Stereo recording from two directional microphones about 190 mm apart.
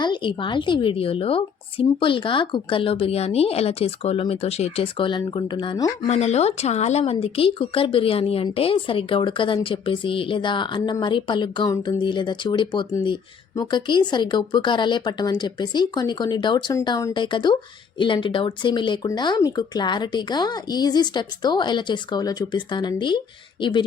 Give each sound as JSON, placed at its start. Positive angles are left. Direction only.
{"t": 0.0, "sound": "speech", "side_deg": 25}
{"t": 6.1, "sound": "speech", "side_deg": 35}